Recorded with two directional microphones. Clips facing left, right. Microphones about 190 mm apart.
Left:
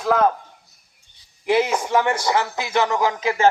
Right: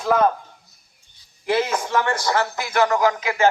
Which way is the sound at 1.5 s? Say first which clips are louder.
Left 2 dB; 15° left (ahead or behind).